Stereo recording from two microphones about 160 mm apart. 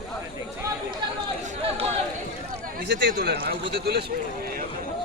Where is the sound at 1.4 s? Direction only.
40° right (ahead or behind).